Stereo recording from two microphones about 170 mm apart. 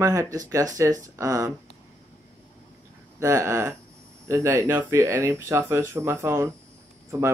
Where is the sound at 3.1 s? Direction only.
15° right (ahead or behind).